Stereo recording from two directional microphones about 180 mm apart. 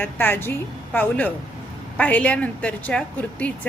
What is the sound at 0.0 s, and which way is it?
A woman's voice, 10° left (ahead or behind).